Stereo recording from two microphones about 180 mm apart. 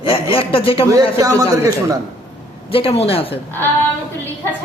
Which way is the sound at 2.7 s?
30° left (ahead or behind).